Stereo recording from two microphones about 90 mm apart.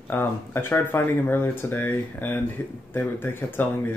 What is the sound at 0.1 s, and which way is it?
Speech, 25° left (ahead or behind).